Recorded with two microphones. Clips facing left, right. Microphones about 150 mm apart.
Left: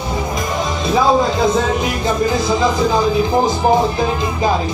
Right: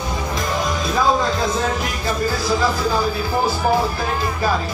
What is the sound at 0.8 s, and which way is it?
Music, 25° left (ahead or behind).